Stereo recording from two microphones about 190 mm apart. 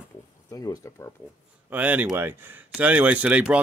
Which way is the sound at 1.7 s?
10° right (ahead or behind).